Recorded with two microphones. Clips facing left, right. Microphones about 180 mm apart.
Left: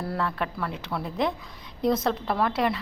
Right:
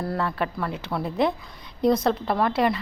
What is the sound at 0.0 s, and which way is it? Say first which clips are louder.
A woman's voice: right 2 dB; centre (ahead or behind).